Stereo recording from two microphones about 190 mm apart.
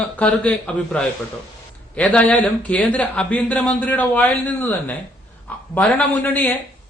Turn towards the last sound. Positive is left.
turn(degrees=10)  # may be behind; listen again after turning